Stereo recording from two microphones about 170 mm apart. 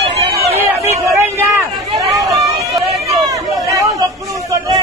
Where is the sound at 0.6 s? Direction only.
15° right (ahead or behind).